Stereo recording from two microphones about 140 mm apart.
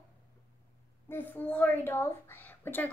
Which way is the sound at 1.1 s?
15° left (ahead or behind).